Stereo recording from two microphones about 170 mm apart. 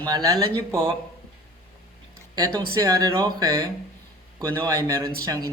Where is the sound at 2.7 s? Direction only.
20° right (ahead or behind).